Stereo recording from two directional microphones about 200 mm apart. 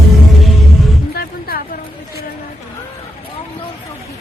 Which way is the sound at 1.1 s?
50° left (ahead or behind).